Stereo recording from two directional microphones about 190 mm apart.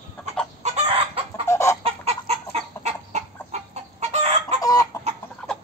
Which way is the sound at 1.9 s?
35° right (ahead or behind).